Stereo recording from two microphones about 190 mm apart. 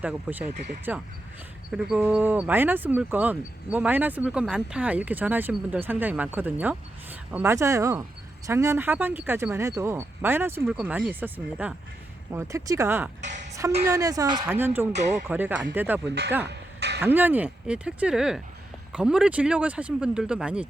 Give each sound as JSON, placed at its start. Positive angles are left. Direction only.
{"t": 0.0, "sound": "speech", "side_deg": -10}
{"t": 13.2, "sound": "music", "side_deg": -40}
{"t": 13.8, "sound": "speech", "side_deg": -15}
{"t": 16.5, "sound": "a sound", "side_deg": -60}
{"t": 17.0, "sound": "speech", "side_deg": -10}